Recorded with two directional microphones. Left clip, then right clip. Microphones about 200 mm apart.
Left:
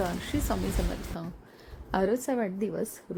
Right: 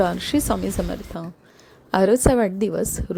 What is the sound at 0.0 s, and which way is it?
A woman's voice, 30° right (ahead or behind).